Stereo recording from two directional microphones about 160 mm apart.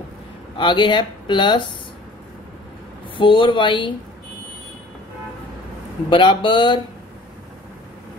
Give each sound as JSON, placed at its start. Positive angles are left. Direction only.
{"t": 0.6, "sound": "speech", "side_deg": 30}
{"t": 3.2, "sound": "speech", "side_deg": 30}
{"t": 6.0, "sound": "speech", "side_deg": 30}